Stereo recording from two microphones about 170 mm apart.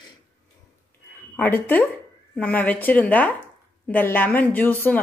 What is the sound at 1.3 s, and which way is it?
A woman's voice, 10° left (ahead or behind).